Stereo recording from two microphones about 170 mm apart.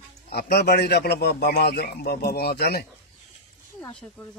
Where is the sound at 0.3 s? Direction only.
70° left (ahead or behind).